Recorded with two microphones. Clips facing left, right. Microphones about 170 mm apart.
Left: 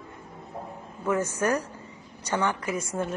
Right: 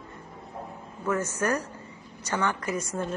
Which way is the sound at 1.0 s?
10° left (ahead or behind).